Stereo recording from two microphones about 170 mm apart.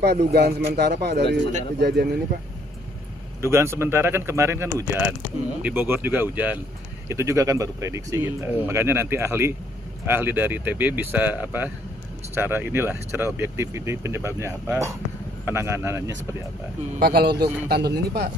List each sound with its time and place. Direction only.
0.0 s speech: 65° right (ahead or behind)
3.3 s speech: 15° right (ahead or behind)
17.0 s speech: 70° right (ahead or behind)